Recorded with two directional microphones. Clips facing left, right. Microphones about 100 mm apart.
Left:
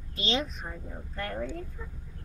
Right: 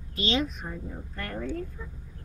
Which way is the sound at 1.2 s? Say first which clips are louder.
Even; 15° left (ahead or behind).